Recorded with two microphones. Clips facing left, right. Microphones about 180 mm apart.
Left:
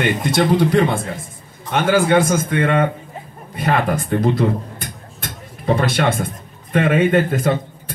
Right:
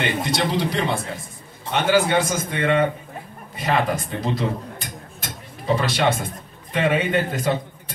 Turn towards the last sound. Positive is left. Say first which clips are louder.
# left 5 dB
turn(degrees=50)  # may be behind; listen again after turning